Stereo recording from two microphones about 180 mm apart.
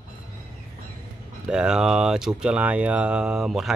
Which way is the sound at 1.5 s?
5° right (ahead or behind).